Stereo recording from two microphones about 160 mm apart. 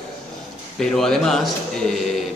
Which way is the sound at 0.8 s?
5° left (ahead or behind).